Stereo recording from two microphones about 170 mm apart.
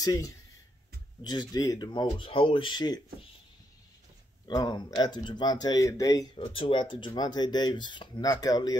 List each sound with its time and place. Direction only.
0.0 s speech: 20° left (ahead or behind)
4.5 s speech: 25° left (ahead or behind)